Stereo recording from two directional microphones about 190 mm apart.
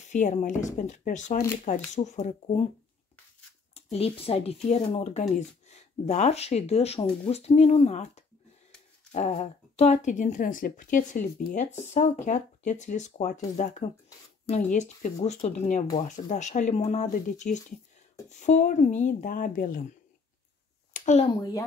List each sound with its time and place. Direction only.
0.0 s speech: 40° left (ahead or behind)
3.7 s speech: 30° left (ahead or behind)
20.9 s a sound: 40° left (ahead or behind)
21.3 s a child's voice: 20° left (ahead or behind)